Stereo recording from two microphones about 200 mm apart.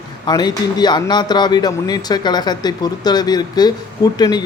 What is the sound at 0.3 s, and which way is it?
Speech, 20° left (ahead or behind).